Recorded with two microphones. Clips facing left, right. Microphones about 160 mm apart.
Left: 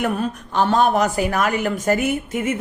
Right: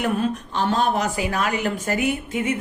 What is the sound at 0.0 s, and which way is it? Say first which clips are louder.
A woman's voice: even; 50° left (ahead or behind).